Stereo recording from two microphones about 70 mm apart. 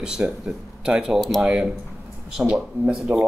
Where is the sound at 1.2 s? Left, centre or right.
Centre.